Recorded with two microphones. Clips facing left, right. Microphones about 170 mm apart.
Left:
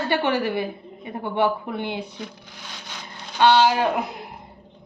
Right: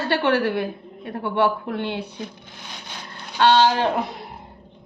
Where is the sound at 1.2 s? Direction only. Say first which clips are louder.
Right 1 dB; 15° left (ahead or behind).